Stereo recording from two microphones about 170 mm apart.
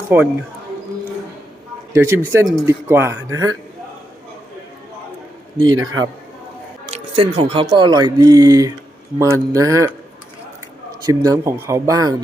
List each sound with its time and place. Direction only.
0.1 s speech: 10° right (ahead or behind)
1.9 s speech: 15° right (ahead or behind)
5.5 s speech: 25° right (ahead or behind)
6.9 s speech: 35° right (ahead or behind); by 9.9 s 20° right (ahead or behind)
11.0 s speech: 20° right (ahead or behind)